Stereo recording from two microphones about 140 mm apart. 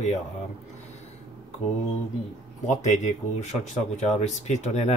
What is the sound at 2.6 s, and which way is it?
Speech, 60° left (ahead or behind).